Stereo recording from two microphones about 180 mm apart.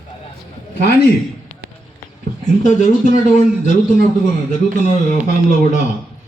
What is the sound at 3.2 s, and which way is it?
Speech, 40° left (ahead or behind).